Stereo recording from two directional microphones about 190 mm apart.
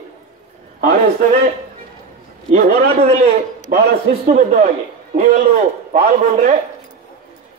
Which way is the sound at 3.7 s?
45° right (ahead or behind).